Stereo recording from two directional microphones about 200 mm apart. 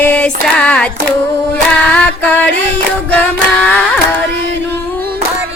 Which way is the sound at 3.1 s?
10° left (ahead or behind).